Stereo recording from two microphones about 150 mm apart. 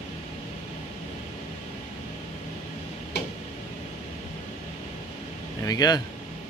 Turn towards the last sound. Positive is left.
turn(degrees=25)  # may be behind; listen again after turning